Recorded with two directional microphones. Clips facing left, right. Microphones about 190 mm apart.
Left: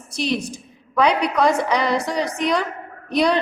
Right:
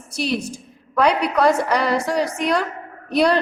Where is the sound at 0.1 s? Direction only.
5° right (ahead or behind).